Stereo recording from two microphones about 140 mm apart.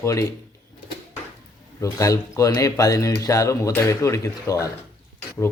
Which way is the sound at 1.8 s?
20° left (ahead or behind).